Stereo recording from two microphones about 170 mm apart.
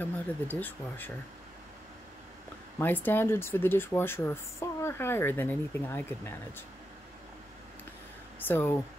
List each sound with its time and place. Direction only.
0.0 s speech: 10° left (ahead or behind)
2.8 s speech: 10° left (ahead or behind)
8.4 s speech: 10° left (ahead or behind)